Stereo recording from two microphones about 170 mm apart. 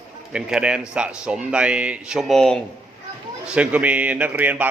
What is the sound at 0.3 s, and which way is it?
A man's voice, 5° right (ahead or behind).